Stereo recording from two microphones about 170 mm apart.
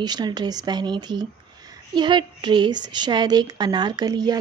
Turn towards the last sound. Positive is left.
turn(degrees=-25)  # may be behind; listen again after turning